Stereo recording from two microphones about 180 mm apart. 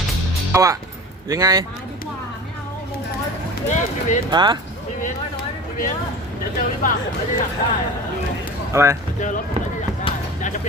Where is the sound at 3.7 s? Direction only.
45° left (ahead or behind).